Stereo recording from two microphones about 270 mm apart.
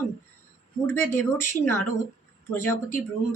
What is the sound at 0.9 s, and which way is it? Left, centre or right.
A woman's voice, centre.